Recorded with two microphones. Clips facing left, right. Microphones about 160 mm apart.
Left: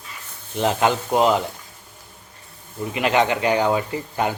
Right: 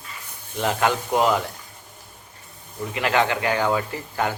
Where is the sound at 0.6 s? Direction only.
20° left (ahead or behind).